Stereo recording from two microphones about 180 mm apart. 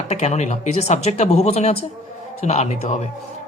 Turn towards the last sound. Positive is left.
turn(degrees=40)  # may be behind; listen again after turning